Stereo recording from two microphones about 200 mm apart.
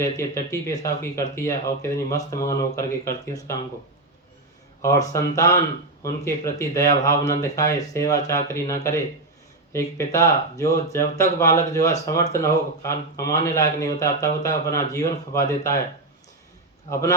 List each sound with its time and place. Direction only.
0.0 s speech: 15° left (ahead or behind)
4.8 s speech: 15° left (ahead or behind)
16.9 s speech: 15° left (ahead or behind)